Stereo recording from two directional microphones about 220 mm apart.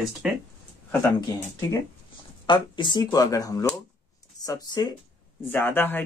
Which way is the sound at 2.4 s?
20° left (ahead or behind).